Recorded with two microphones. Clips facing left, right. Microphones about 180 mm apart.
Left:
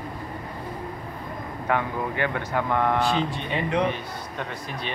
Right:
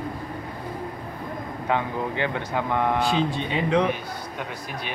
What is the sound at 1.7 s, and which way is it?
Speech, 20° right (ahead or behind).